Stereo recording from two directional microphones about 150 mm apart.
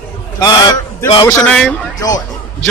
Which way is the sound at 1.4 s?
10° left (ahead or behind).